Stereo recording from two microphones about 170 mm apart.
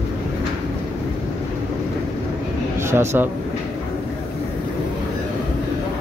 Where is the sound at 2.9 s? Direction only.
15° right (ahead or behind).